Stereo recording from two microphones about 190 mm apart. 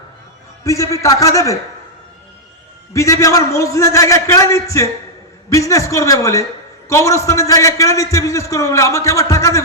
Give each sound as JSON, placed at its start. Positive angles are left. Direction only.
{"t": 0.6, "sound": "a man's voice", "side_deg": 15}
{"t": 2.9, "sound": "a man's voice", "side_deg": 15}